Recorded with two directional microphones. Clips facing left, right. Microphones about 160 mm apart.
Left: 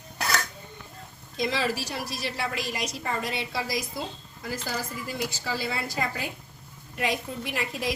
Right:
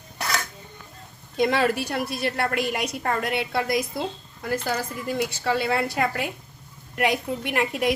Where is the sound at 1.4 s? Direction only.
55° right (ahead or behind).